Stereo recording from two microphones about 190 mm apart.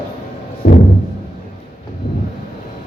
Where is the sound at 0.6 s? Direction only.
55° left (ahead or behind).